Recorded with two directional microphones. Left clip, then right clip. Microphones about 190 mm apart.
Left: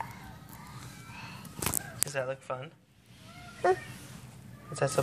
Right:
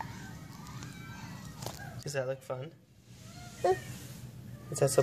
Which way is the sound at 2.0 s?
45° right (ahead or behind).